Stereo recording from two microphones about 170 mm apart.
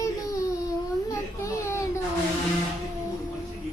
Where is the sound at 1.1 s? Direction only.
15° left (ahead or behind).